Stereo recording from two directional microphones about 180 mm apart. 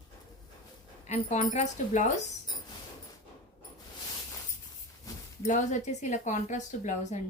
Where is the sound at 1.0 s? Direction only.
40° left (ahead or behind).